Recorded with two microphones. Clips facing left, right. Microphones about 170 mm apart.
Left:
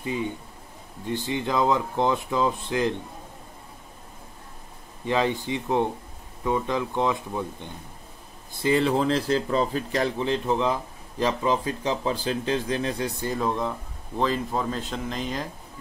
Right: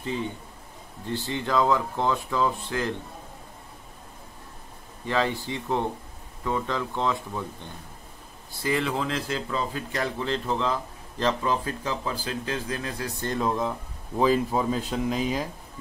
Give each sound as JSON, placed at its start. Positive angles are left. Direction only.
{"t": 0.0, "sound": "speech", "side_deg": 10}
{"t": 5.0, "sound": "speech", "side_deg": 20}
{"t": 8.6, "sound": "speech", "side_deg": 30}
{"t": 10.0, "sound": "speech", "side_deg": 20}
{"t": 13.2, "sound": "speech", "side_deg": 5}